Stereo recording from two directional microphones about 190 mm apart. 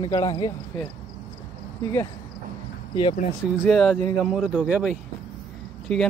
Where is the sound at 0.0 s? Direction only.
20° left (ahead or behind).